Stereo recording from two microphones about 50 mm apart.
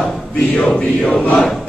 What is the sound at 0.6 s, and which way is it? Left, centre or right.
Choir, centre.